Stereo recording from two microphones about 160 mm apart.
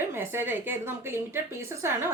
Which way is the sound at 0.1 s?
15° right (ahead or behind).